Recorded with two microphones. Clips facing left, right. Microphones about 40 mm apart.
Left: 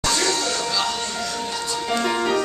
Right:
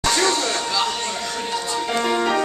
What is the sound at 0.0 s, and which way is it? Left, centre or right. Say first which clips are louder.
Music: right 3 dB; right.